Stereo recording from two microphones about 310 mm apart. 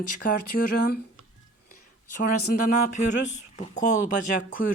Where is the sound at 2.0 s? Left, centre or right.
Left.